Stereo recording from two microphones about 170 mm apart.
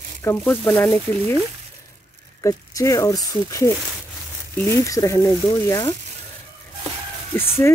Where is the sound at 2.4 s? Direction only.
20° left (ahead or behind).